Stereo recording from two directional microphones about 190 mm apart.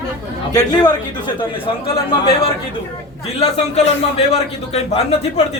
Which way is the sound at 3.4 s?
35° left (ahead or behind).